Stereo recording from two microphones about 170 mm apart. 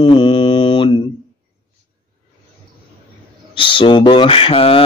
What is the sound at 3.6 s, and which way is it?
Speech, 30° left (ahead or behind).